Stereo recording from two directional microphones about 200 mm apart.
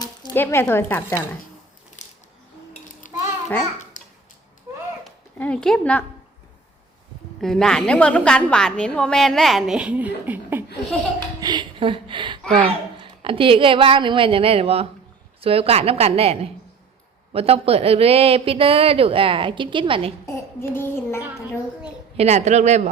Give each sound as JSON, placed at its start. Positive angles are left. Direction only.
{"t": 0.0, "sound": "a sound", "side_deg": 20}
{"t": 0.3, "sound": "speech", "side_deg": 10}
{"t": 4.0, "sound": "a sound", "side_deg": 40}
{"t": 5.0, "sound": "speech", "side_deg": 5}
{"t": 7.4, "sound": "a woman's voice", "side_deg": 5}
{"t": 11.3, "sound": "a sound", "side_deg": -20}
{"t": 12.5, "sound": "a man's voice", "side_deg": -25}
{"t": 20.2, "sound": "child singing", "side_deg": 15}
{"t": 22.2, "sound": "speech", "side_deg": -35}